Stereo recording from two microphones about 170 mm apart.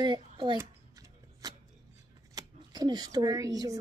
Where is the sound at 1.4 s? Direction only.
20° right (ahead or behind).